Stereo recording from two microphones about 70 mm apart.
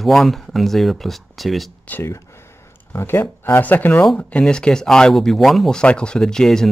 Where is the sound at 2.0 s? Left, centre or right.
Left; by 5.7 s centre.